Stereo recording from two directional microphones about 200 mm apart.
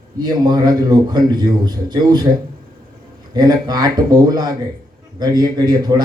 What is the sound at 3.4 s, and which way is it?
A man's voice, 20° right (ahead or behind).